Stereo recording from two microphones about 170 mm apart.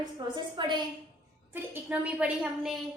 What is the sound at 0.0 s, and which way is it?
Speech, 25° right (ahead or behind).